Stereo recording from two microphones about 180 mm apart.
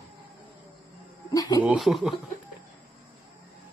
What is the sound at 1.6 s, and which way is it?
Speech, centre (ahead or behind).